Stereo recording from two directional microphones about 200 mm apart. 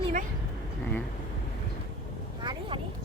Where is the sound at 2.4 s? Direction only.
25° right (ahead or behind).